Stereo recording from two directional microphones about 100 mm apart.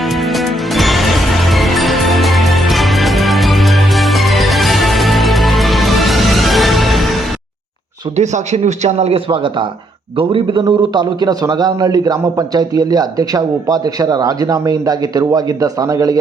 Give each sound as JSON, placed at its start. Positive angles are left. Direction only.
{"t": 0.3, "sound": "music", "side_deg": 0}
{"t": 8.5, "sound": "a man's voice", "side_deg": -90}
{"t": 10.6, "sound": "a man's voice", "side_deg": -45}